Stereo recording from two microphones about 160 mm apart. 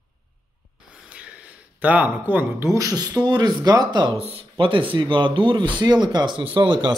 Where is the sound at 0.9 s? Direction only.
5° right (ahead or behind).